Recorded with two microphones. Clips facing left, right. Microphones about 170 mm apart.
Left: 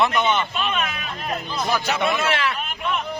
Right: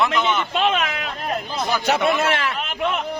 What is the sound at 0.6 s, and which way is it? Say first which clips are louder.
Speech: right 5 dB; 90° right.